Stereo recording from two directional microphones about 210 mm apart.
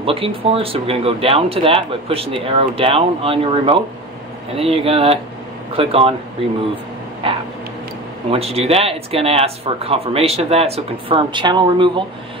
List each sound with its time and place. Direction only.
0.0 s speech: 25° right (ahead or behind)
7.2 s a sound: 25° right (ahead or behind)
8.3 s speech: 30° right (ahead or behind)